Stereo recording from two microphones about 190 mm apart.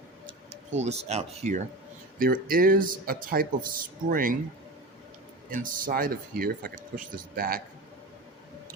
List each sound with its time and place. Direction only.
0.8 s speech: 35° right (ahead or behind)
2.1 s speech: 50° right (ahead or behind)
5.5 s speech: 45° right (ahead or behind)